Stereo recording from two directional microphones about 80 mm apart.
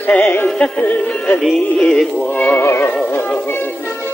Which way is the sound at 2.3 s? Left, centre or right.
Left.